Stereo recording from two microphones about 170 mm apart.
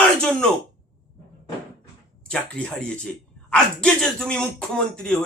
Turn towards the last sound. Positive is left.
turn(degrees=5)  # may be behind; listen again after turning